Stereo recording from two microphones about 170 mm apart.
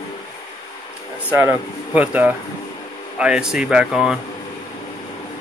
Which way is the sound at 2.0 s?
10° right (ahead or behind).